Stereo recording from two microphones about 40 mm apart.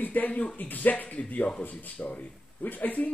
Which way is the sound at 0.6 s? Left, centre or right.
Left.